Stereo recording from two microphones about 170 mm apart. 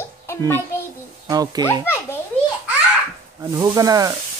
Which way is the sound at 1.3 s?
20° right (ahead or behind).